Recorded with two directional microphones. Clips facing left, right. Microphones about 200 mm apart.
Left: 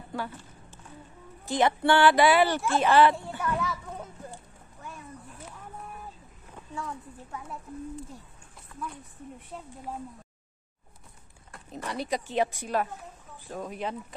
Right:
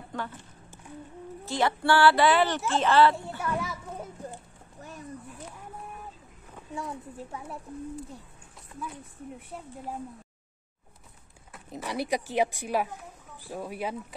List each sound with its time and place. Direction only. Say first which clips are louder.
0.1 s speech: left 1 dB; 10° left (ahead or behind)
1.4 s speech: left 3 dB; 20° left (ahead or behind)
3.3 s children playing: left 1 dB; 10° right (ahead or behind)
4.8 s a sound: even; 35° right (ahead or behind)
6.7 s a woman's voice: right 2 dB; 25° right (ahead or behind)
11.7 s speech: right 2 dB; 10° right (ahead or behind)